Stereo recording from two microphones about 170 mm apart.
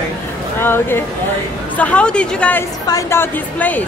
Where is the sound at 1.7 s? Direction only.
10° left (ahead or behind).